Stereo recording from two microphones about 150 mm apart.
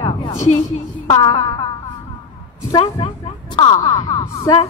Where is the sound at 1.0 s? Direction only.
25° left (ahead or behind).